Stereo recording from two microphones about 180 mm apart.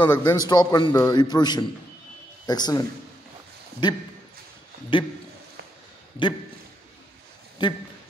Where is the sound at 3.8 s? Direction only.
25° left (ahead or behind).